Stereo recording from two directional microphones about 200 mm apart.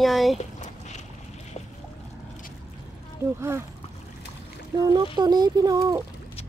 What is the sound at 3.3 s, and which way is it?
Speech, 15° right (ahead or behind).